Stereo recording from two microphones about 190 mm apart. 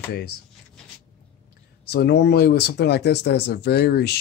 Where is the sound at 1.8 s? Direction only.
60° left (ahead or behind).